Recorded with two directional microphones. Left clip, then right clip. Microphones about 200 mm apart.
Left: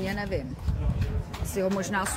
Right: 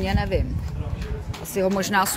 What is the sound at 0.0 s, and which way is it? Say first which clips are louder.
Speech: right 6 dB; 35° right (ahead or behind).